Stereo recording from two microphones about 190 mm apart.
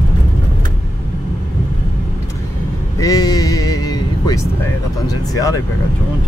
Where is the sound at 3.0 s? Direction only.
20° left (ahead or behind).